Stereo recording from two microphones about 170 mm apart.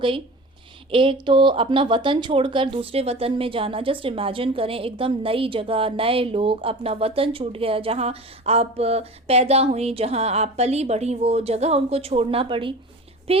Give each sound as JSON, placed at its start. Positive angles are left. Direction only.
{"t": 0.9, "sound": "speech", "side_deg": -30}